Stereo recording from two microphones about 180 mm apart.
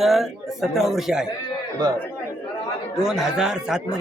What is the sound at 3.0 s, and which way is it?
Speech, 5° right (ahead or behind).